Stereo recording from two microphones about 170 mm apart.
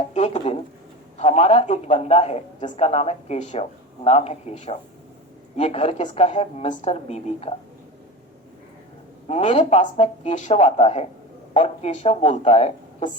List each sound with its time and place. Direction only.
0.1 s speech: 40° left (ahead or behind)
9.2 s speech: 40° left (ahead or behind)